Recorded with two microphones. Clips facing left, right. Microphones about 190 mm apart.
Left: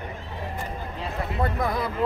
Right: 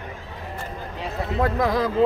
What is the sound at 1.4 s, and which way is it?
Speech, 90° right.